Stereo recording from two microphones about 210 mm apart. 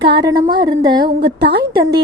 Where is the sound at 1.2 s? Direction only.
50° right (ahead or behind).